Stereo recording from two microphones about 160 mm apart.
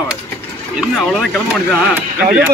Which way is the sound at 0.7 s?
Centre (ahead or behind).